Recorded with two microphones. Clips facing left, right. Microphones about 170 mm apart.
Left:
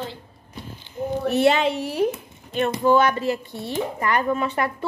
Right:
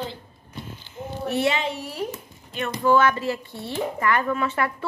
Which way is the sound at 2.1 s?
30° left (ahead or behind).